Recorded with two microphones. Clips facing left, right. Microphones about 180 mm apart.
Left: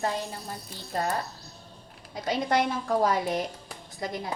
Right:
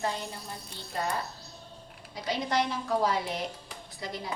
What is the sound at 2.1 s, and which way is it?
A woman's voice, 50° left (ahead or behind).